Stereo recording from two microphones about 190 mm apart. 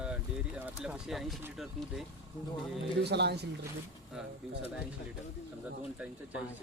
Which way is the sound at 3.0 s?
60° right (ahead or behind).